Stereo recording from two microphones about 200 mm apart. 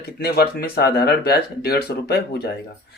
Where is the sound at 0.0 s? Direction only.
50° left (ahead or behind).